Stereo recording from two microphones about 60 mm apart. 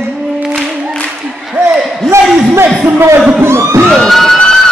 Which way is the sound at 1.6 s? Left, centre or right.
Right.